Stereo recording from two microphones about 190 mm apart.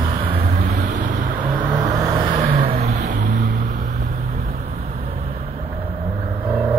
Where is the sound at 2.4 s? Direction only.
50° right (ahead or behind).